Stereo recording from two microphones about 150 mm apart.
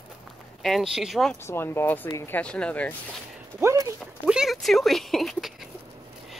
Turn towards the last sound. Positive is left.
turn(degrees=0)  # may be behind; listen again after turning